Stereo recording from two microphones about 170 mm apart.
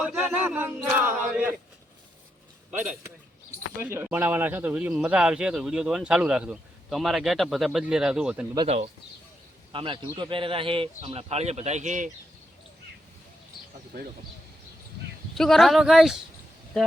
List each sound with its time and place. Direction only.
0.0 s a sound: 5° right (ahead or behind)
2.6 s a man's voice: 5° right (ahead or behind)
8.6 s speech: 40° right (ahead or behind)
15.4 s a man's voice: centre (ahead or behind)